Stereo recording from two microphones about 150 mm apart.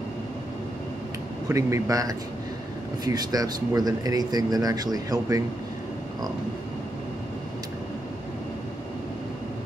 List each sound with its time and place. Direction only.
1.5 s speech: 20° right (ahead or behind)